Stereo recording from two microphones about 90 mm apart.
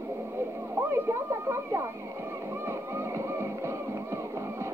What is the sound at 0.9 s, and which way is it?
Speech, 30° right (ahead or behind).